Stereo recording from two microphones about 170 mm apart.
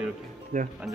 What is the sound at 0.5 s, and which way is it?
Speech, 50° right (ahead or behind).